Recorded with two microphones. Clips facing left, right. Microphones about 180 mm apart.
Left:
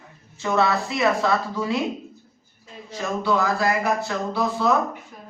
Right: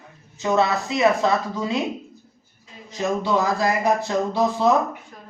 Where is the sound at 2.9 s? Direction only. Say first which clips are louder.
Right 1 dB; 20° right (ahead or behind).